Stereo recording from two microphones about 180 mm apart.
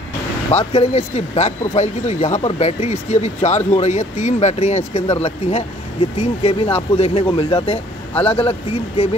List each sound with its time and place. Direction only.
0.7 s speech: 35° left (ahead or behind)